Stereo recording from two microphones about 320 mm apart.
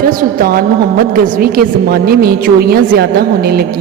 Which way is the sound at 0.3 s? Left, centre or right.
Right.